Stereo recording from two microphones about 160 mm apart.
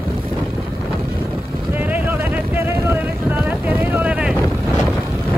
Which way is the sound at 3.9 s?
10° right (ahead or behind).